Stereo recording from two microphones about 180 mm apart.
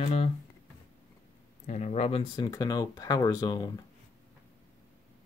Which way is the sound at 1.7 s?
40° left (ahead or behind).